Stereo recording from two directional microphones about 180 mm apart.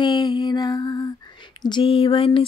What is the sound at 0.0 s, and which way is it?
Mantra, 25° left (ahead or behind).